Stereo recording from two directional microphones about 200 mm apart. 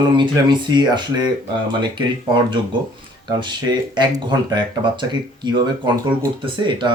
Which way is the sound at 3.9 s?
20° right (ahead or behind).